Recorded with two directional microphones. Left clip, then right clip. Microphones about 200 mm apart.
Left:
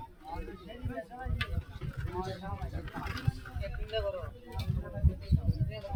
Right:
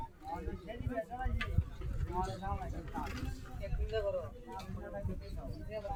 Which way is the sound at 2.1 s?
45° right (ahead or behind).